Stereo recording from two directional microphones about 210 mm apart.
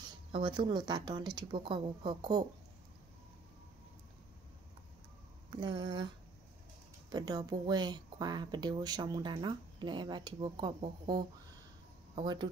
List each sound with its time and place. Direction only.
0.3 s speech: 20° right (ahead or behind)
5.5 s speech: 20° right (ahead or behind)